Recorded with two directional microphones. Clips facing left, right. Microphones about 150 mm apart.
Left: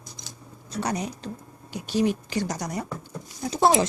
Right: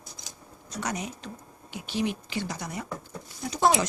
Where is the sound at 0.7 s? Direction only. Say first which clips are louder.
Left 4 dB; 30° left (ahead or behind).